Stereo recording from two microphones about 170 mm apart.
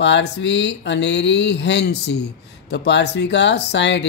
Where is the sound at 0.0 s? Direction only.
90° left.